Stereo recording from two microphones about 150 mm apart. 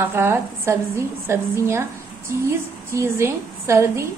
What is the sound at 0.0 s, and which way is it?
A woman's voice, 15° right (ahead or behind).